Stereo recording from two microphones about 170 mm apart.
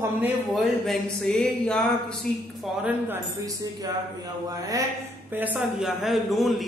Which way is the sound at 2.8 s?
15° right (ahead or behind).